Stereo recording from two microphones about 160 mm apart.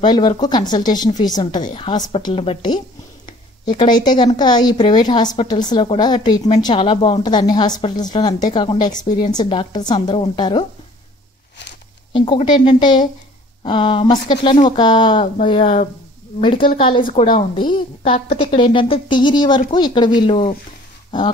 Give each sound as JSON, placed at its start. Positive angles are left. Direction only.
{"t": 0.0, "sound": "a woman's voice", "side_deg": 25}
{"t": 3.3, "sound": "a sound", "side_deg": 30}
{"t": 4.4, "sound": "a woman's voice", "side_deg": 25}
{"t": 12.1, "sound": "a woman's voice", "side_deg": 30}